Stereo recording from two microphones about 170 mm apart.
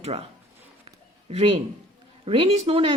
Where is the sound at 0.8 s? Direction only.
35° right (ahead or behind).